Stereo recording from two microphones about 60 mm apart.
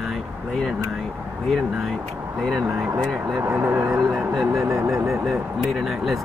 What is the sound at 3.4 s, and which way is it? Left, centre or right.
Speech, right.